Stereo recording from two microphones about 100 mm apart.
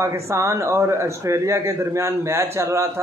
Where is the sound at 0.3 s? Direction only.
30° right (ahead or behind).